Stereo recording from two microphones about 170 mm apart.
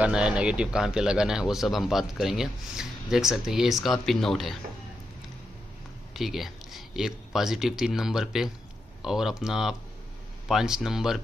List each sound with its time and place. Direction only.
0.0 s speech: 5° right (ahead or behind)
6.1 s speech: centre (ahead or behind)